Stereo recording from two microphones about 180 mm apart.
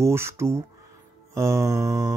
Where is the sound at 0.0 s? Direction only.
15° right (ahead or behind).